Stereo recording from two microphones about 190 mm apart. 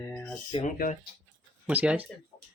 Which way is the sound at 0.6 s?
45° left (ahead or behind).